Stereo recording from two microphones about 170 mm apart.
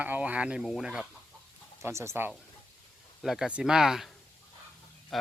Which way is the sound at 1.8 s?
15° right (ahead or behind).